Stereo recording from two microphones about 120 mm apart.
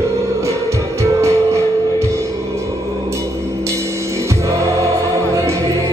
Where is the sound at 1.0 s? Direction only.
25° right (ahead or behind).